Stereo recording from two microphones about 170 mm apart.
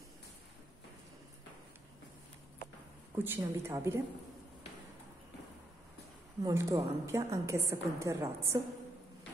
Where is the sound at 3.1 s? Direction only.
15° right (ahead or behind).